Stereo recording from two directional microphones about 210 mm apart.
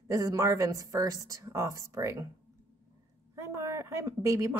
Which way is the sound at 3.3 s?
15° right (ahead or behind).